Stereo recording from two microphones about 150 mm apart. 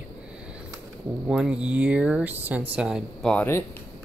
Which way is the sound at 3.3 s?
15° left (ahead or behind).